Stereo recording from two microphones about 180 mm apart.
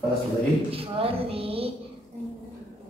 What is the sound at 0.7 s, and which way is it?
A woman's voice, 30° right (ahead or behind).